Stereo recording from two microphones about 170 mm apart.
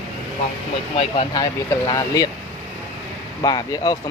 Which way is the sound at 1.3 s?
25° left (ahead or behind).